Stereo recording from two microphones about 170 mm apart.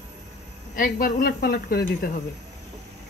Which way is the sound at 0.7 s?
55° left (ahead or behind).